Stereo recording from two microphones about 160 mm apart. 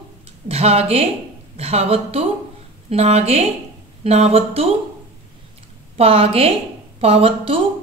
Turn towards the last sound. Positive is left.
turn(degrees=-35)  # may be behind; listen again after turning